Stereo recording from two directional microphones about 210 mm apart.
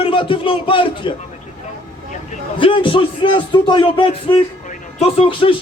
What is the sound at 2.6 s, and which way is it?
Speech, 25° left (ahead or behind).